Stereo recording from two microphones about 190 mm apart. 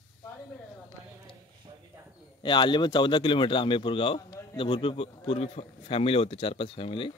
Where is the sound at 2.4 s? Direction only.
25° left (ahead or behind).